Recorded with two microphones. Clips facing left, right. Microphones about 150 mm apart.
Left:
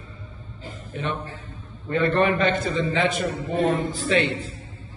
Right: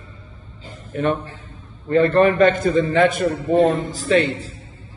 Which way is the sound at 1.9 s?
40° right (ahead or behind).